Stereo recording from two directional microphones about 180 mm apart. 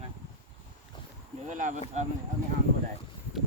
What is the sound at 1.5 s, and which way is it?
Speech, 45° right (ahead or behind).